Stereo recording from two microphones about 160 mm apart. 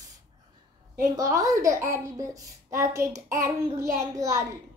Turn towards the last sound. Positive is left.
turn(degrees=-20)  # may be behind; listen again after turning